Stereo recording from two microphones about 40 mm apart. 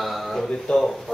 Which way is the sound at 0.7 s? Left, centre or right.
Left.